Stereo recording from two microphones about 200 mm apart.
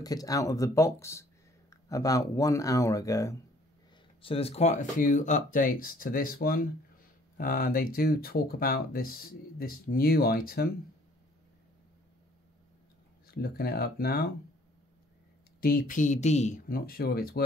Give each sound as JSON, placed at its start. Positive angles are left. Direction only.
{"t": 0.0, "sound": "speech", "side_deg": 20}
{"t": 4.2, "sound": "speech", "side_deg": 30}
{"t": 13.3, "sound": "speech", "side_deg": 50}
{"t": 15.6, "sound": "speech", "side_deg": 45}